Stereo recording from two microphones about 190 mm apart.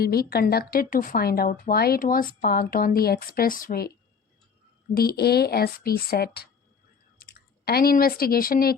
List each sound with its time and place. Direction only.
0.0 s speech: 55° left (ahead or behind)
4.9 s a woman's voice: 55° left (ahead or behind)